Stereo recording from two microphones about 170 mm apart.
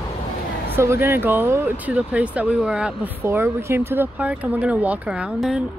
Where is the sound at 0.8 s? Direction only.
15° right (ahead or behind).